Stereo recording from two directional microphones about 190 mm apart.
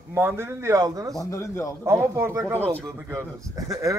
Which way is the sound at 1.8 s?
15° right (ahead or behind).